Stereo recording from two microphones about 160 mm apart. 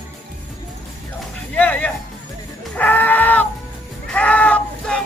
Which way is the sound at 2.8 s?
10° left (ahead or behind).